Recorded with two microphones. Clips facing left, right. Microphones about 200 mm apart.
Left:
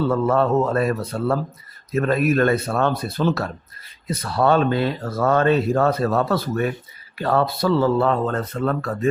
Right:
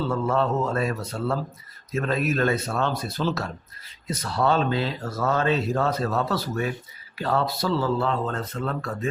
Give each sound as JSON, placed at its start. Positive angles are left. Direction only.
{"t": 0.1, "sound": "speech", "side_deg": 55}